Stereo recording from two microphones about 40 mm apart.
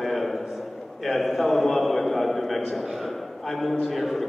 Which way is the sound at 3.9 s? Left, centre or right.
Centre.